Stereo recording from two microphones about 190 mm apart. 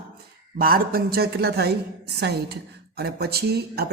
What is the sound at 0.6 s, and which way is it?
A woman's voice, 50° right (ahead or behind).